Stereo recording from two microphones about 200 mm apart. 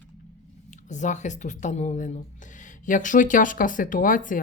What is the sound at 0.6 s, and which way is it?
Speech, 35° left (ahead or behind).